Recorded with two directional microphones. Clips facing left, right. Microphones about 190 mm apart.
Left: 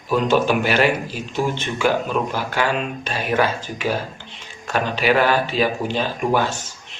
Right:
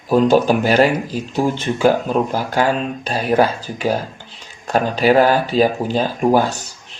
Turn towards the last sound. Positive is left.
turn(degrees=-40)  # may be behind; listen again after turning